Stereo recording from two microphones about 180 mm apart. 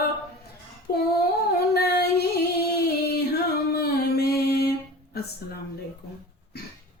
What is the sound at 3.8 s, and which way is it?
Music, 60° left (ahead or behind).